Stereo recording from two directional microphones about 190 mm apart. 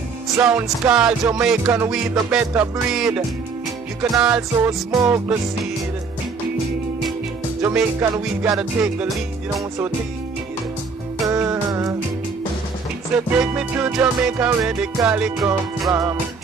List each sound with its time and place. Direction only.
0.4 s music: 5° right (ahead or behind)
7.6 s music: 10° right (ahead or behind)
11.4 s music: 15° right (ahead or behind)
13.1 s music: 5° right (ahead or behind)
15.9 s music: 15° right (ahead or behind)